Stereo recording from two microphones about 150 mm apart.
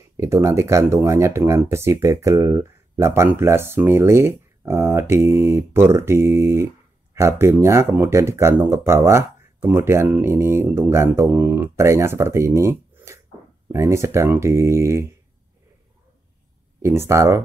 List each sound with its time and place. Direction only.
0.2 s speech: 20° right (ahead or behind)
16.8 s speech: 20° right (ahead or behind)